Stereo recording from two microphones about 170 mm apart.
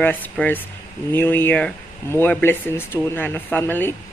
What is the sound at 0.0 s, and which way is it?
Speech, 10° left (ahead or behind).